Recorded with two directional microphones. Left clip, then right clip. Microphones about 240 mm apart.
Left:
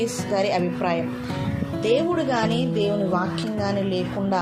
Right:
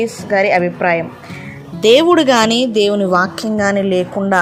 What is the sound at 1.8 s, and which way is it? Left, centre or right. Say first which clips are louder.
Speech: right 12 dB; right.